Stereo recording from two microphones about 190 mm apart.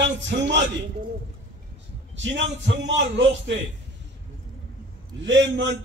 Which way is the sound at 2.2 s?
75° right (ahead or behind).